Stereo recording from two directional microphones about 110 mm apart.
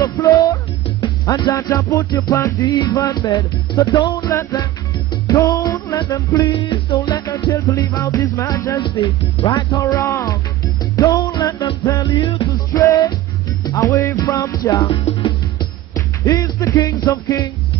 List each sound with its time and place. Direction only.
0.0 s music: 30° left (ahead or behind)
4.3 s music: 30° left (ahead or behind)
6.5 s music: 45° left (ahead or behind); by 8.8 s 30° left (ahead or behind)
8.8 s speech: 45° left (ahead or behind)
9.8 s music: 25° left (ahead or behind)
12.4 s music: 30° left (ahead or behind)
14.9 s music: 45° left (ahead or behind)
15.9 s speech: 30° left (ahead or behind)